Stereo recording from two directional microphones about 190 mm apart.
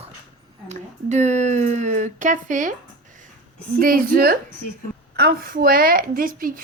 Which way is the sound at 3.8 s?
50° right (ahead or behind).